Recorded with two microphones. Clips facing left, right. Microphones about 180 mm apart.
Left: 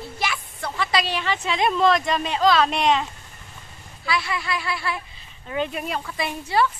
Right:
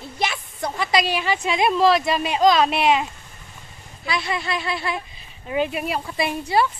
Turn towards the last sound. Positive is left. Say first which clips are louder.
# right 2 dB
turn(degrees=-15)  # may be behind; listen again after turning